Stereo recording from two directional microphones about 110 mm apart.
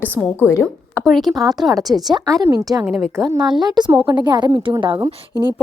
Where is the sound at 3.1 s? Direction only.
35° right (ahead or behind).